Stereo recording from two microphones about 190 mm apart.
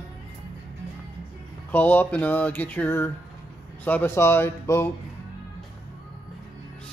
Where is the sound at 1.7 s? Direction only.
10° left (ahead or behind).